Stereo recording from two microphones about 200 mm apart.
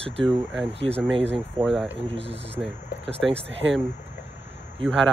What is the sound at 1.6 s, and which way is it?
Speech, 25° right (ahead or behind).